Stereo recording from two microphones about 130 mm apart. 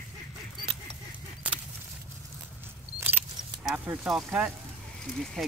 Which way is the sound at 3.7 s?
10° right (ahead or behind).